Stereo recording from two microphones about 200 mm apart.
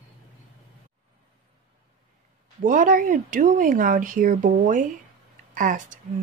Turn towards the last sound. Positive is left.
turn(degrees=-40)  # may be behind; listen again after turning